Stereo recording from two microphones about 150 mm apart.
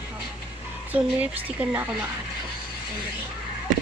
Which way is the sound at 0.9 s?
10° right (ahead or behind).